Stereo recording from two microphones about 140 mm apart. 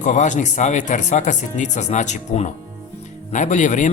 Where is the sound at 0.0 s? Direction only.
60° left (ahead or behind).